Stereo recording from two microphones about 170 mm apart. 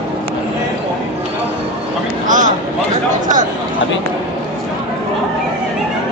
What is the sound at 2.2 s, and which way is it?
Vehicle, 50° right (ahead or behind).